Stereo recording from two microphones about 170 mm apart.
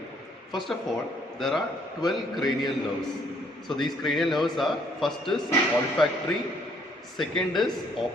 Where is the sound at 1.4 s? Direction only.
Centre (ahead or behind).